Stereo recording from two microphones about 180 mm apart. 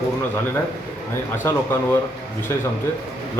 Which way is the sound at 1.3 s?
15° left (ahead or behind).